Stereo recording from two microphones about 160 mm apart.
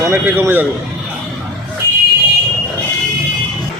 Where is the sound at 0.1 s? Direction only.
10° right (ahead or behind).